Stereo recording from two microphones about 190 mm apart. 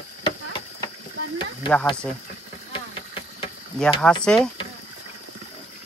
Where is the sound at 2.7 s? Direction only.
25° left (ahead or behind).